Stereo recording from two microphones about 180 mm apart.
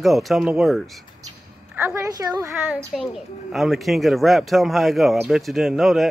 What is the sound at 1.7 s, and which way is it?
Speech, 15° right (ahead or behind).